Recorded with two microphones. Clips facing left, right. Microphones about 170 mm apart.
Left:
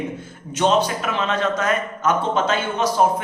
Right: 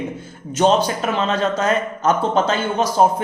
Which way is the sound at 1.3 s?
30° right (ahead or behind).